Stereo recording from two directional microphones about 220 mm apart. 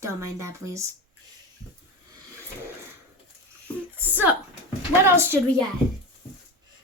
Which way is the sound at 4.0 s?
10° right (ahead or behind).